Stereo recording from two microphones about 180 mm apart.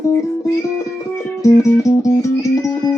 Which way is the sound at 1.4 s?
20° left (ahead or behind).